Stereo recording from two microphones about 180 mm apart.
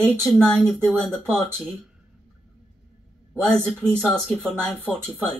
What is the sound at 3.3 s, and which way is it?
Speech, 5° left (ahead or behind).